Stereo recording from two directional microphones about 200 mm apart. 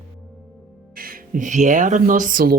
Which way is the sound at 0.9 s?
45° right (ahead or behind).